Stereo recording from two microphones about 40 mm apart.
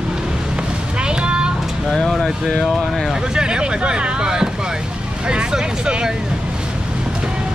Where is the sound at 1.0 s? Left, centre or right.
Right.